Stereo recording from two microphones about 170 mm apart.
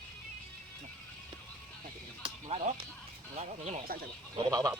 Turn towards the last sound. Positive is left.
turn(degrees=-20)  # may be behind; listen again after turning